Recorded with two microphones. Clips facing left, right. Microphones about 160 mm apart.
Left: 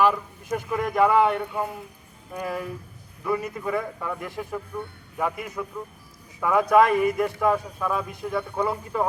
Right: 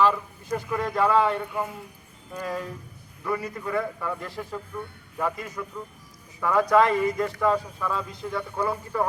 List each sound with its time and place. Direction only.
0.0 s speech: 15° left (ahead or behind)